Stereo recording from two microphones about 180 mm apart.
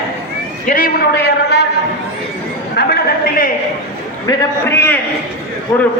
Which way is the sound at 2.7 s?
60° left (ahead or behind).